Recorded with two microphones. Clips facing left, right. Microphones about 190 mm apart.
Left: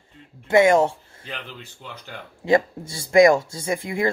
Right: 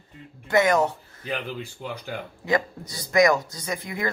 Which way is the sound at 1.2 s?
10° right (ahead or behind).